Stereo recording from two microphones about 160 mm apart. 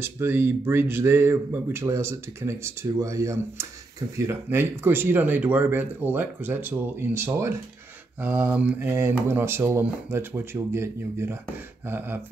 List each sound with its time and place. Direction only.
0.0 s speech: 15° right (ahead or behind)